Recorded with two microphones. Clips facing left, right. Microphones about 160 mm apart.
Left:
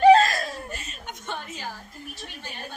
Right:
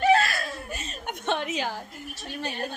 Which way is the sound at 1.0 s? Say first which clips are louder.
Right 8 dB; 75° right (ahead or behind).